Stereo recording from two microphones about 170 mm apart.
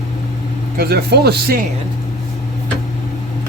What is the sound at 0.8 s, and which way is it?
Speech, 70° right (ahead or behind).